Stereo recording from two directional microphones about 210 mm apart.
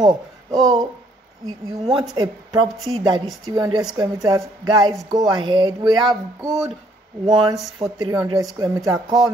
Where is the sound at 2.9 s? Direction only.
20° right (ahead or behind).